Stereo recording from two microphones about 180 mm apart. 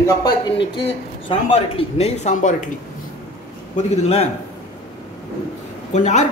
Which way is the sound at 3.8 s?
35° left (ahead or behind).